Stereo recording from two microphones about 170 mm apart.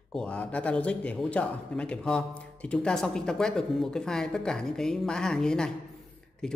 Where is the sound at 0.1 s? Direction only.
5° left (ahead or behind).